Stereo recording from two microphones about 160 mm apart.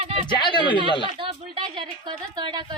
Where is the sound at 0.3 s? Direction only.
30° left (ahead or behind).